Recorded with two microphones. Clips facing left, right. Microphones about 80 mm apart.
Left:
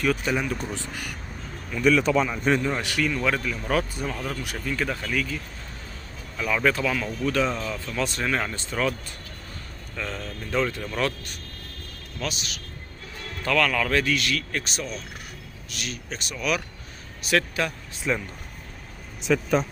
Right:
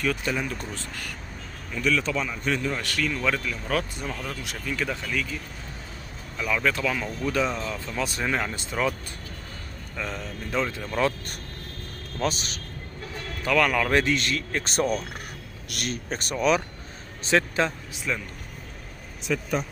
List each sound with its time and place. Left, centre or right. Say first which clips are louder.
0.0 s speech: left 3 dB; centre
1.9 s speech: left 5 dB; left
2.6 s speech: left 2 dB; centre
6.5 s speech: left 2 dB; centre
7.0 s speech: left 1 dB; centre
9.9 s speech: even; centre
12.2 s a man's voice: right 4 dB; right
13.4 s speech: right 1 dB; centre
14.6 s speech: right 8 dB; right
17.2 s speech: right 2 dB; right
18.1 s speech: left 4 dB; centre
19.3 s speech: left 5 dB; left